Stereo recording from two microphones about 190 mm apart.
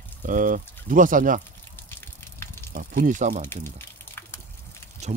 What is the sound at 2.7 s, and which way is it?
Speech, 50° right (ahead or behind).